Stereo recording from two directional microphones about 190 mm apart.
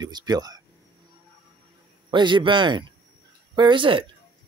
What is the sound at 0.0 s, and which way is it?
Speech, 20° right (ahead or behind).